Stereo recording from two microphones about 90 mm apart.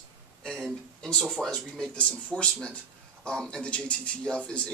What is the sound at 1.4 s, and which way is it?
Speech, 5° left (ahead or behind).